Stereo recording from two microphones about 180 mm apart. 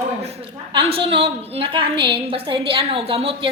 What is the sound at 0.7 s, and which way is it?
A woman's voice, 30° right (ahead or behind).